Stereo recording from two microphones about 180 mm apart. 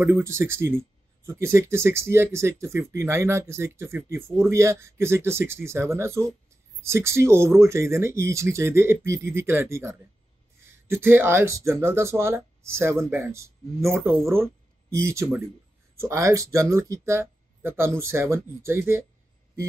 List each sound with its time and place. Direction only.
0.0 s speech: 15° right (ahead or behind)